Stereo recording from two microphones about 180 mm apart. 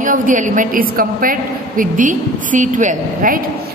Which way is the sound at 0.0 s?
45° right (ahead or behind).